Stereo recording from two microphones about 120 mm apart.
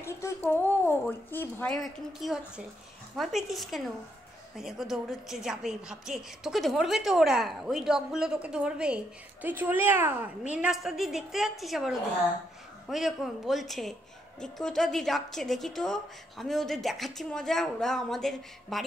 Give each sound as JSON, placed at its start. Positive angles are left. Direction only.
{"t": 0.0, "sound": "a sound", "side_deg": 20}
{"t": 1.0, "sound": "speech", "side_deg": 15}
{"t": 1.7, "sound": "a woman's voice", "side_deg": 0}